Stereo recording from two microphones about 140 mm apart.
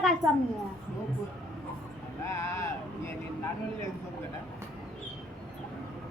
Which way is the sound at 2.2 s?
20° left (ahead or behind).